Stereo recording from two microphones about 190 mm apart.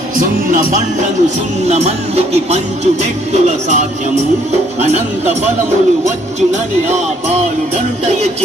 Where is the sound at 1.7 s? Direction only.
35° right (ahead or behind).